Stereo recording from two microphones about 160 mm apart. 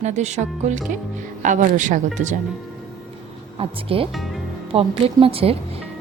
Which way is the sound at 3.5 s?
35° right (ahead or behind).